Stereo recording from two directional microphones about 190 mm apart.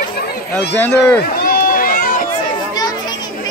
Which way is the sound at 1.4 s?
50° left (ahead or behind).